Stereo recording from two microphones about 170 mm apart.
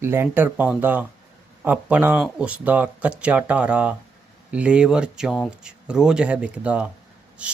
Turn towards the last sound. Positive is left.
turn(degrees=-10)  # may be behind; listen again after turning